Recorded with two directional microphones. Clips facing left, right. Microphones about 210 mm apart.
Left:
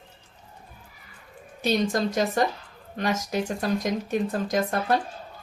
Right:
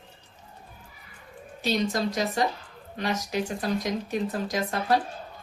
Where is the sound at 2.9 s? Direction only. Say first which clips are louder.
Left 2 dB; 50° left (ahead or behind).